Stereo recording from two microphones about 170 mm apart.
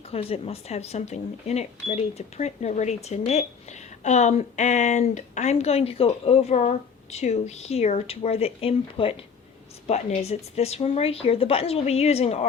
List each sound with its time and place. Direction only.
0.1 s speech: 35° left (ahead or behind)